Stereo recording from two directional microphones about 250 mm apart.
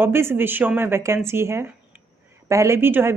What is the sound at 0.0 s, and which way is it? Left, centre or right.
Speech, centre.